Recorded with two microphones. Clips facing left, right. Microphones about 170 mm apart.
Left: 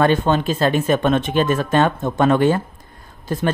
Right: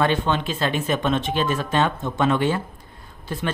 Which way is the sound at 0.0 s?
45° left (ahead or behind).